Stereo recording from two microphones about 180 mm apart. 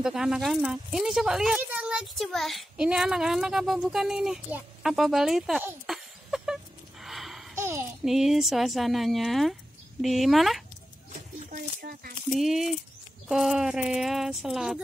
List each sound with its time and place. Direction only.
0.0 s speech: 5° right (ahead or behind)
5.9 s a sound: 5° right (ahead or behind)
7.5 s a sound: 15° right (ahead or behind)
8.0 s speech: centre (ahead or behind)
11.3 s speech: 55° right (ahead or behind)
12.4 s speech: centre (ahead or behind)